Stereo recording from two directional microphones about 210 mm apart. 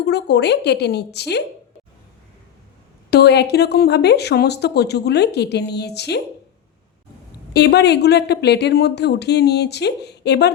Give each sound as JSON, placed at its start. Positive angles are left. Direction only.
{"t": 0.0, "sound": "speech", "side_deg": 55}
{"t": 3.1, "sound": "speech", "side_deg": 50}
{"t": 7.5, "sound": "speech", "side_deg": 55}